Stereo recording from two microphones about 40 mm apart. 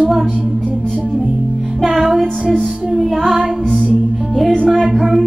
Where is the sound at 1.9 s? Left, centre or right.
Centre.